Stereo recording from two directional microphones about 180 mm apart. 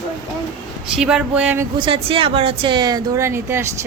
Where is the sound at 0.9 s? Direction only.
5° right (ahead or behind).